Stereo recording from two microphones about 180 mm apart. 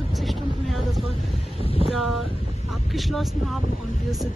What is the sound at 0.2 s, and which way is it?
Vehicle, centre (ahead or behind).